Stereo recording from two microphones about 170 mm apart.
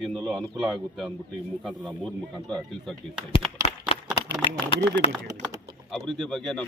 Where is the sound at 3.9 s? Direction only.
35° left (ahead or behind).